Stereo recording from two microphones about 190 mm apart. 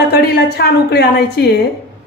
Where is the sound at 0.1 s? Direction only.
55° left (ahead or behind).